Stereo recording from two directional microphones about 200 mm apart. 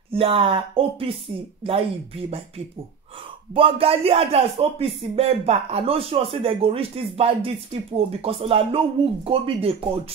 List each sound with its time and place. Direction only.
0.1 s speech: 25° right (ahead or behind)
3.5 s speech: 25° right (ahead or behind)